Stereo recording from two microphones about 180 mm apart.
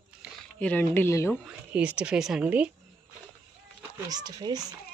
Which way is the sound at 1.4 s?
5° right (ahead or behind).